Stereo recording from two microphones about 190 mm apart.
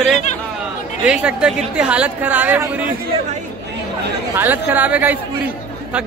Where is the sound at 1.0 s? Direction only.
5° right (ahead or behind).